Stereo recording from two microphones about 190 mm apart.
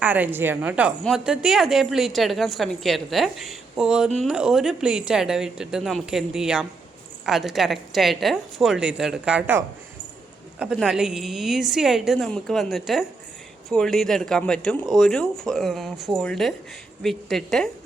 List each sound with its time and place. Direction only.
0.0 s a woman's voice: 10° right (ahead or behind)